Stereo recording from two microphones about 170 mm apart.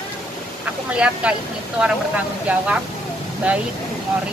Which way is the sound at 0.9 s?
5° right (ahead or behind).